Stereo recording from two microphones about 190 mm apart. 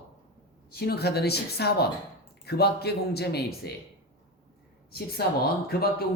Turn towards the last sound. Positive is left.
turn(degrees=55)  # may be behind; listen again after turning